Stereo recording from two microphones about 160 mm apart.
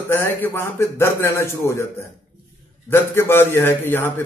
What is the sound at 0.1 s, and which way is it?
A man's voice, 15° left (ahead or behind).